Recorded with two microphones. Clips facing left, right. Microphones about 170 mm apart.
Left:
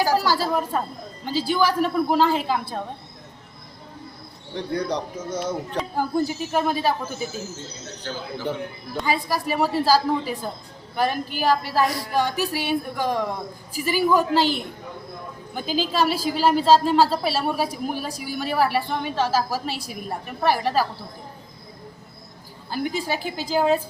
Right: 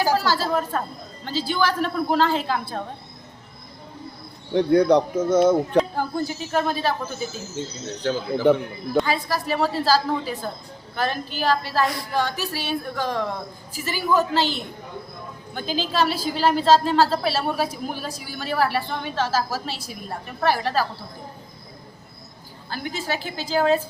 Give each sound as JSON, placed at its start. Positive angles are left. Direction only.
{"t": 0.2, "sound": "a woman's voice", "side_deg": 10}
{"t": 4.5, "sound": "speech", "side_deg": -60}
{"t": 6.0, "sound": "a woman's voice", "side_deg": 10}
{"t": 8.0, "sound": "speech", "side_deg": -60}
{"t": 9.0, "sound": "a woman's voice", "side_deg": 10}
{"t": 22.7, "sound": "a woman's voice", "side_deg": 15}